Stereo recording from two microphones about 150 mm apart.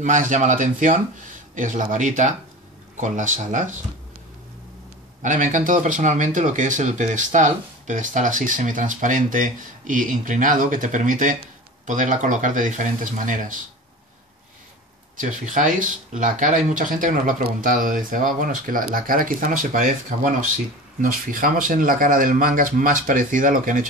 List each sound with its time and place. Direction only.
0.0 s speech: 55° right (ahead or behind)
5.2 s speech: 55° right (ahead or behind)
15.1 s speech: 60° right (ahead or behind)